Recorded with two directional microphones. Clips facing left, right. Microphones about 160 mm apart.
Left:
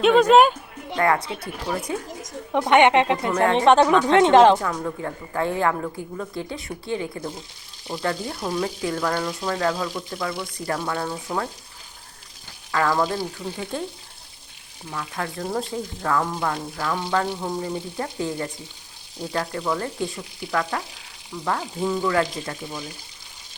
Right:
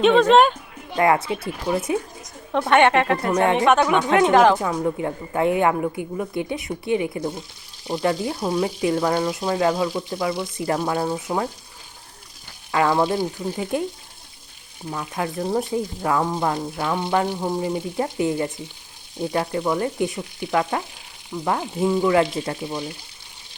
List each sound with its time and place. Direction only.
0.0 s speech: centre (ahead or behind)
0.9 s speech: 20° right (ahead or behind)
2.5 s a woman's voice: 15° left (ahead or behind)
3.2 s speech: 25° right (ahead or behind)
3.6 s speech: 30° left (ahead or behind)
4.6 s speech: 20° right (ahead or behind)
12.7 s speech: 20° right (ahead or behind)
14.8 s speech: 25° right (ahead or behind)